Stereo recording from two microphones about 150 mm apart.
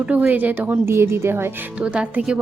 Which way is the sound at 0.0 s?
10° right (ahead or behind).